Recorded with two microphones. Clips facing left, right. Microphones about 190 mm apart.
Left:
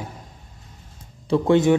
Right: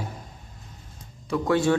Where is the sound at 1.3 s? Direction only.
20° left (ahead or behind).